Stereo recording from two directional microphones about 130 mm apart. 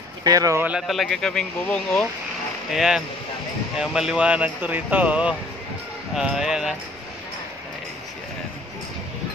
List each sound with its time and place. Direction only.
0.2 s speech: 25° right (ahead or behind)
0.7 s speech: 5° right (ahead or behind)
2.7 s speech: 5° right (ahead or behind)